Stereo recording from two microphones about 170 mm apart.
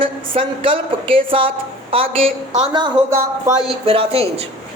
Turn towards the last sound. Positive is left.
turn(degrees=-35)  # may be behind; listen again after turning